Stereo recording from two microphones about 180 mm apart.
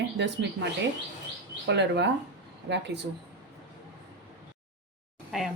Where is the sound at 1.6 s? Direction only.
75° right (ahead or behind).